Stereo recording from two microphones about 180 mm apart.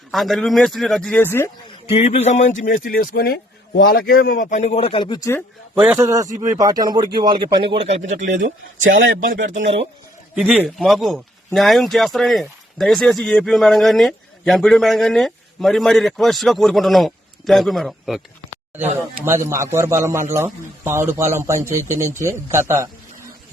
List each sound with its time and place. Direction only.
0.1 s speech: centre (ahead or behind)
2.1 s a man's voice: 40° left (ahead or behind); by 5.4 s 20° left (ahead or behind)
6.0 s speech: 20° right (ahead or behind); by 8.3 s 40° right (ahead or behind)
8.4 s speech: 90° right
9.2 s speech: 50° right (ahead or behind)
10.3 s speech: 5° right (ahead or behind)
18.8 s speech: 15° right (ahead or behind)